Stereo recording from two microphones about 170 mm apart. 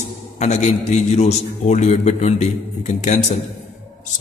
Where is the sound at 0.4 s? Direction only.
40° left (ahead or behind).